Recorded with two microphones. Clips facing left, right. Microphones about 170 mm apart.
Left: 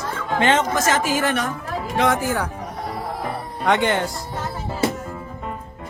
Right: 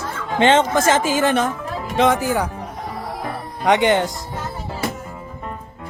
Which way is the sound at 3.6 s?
20° right (ahead or behind).